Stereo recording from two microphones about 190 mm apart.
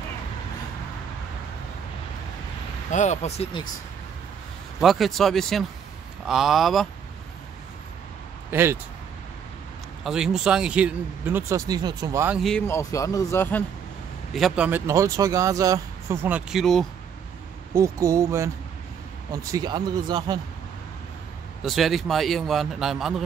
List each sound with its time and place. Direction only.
2.9 s speech: 40° left (ahead or behind)
4.7 s a man's voice: centre (ahead or behind)
8.5 s speech: 10° right (ahead or behind)
10.0 s speech: 5° right (ahead or behind)
12.4 s a man's voice: centre (ahead or behind)
12.6 s speech: 15° left (ahead or behind)
14.3 s speech: 5° right (ahead or behind)
17.7 s speech: 15° right (ahead or behind)
21.6 s a man's voice: centre (ahead or behind)